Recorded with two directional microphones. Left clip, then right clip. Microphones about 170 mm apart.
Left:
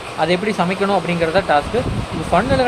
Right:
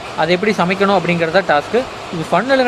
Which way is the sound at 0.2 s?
20° right (ahead or behind).